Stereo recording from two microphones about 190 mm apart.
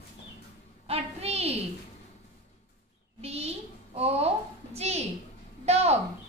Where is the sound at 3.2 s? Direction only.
30° right (ahead or behind).